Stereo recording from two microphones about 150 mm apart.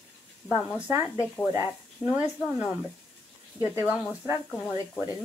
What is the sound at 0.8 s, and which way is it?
Speech, 15° right (ahead or behind).